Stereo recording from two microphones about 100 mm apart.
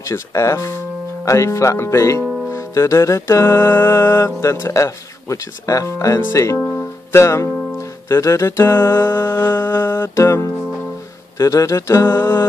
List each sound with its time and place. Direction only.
0.1 s speech: 30° left (ahead or behind)
7.1 s music: 30° left (ahead or behind)
11.3 s speech: 35° left (ahead or behind)